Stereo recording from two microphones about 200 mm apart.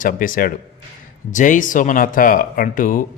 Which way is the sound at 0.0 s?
45° left (ahead or behind).